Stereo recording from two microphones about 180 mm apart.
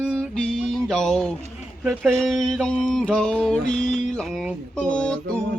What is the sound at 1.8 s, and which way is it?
Speech, centre (ahead or behind).